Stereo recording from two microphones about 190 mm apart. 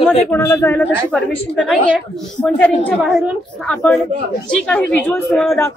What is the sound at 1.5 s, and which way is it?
A woman's voice, centre (ahead or behind).